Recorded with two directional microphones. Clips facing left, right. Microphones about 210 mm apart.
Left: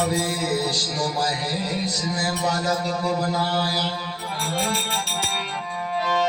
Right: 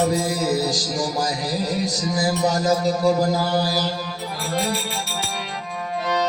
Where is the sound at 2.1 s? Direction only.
40° right (ahead or behind).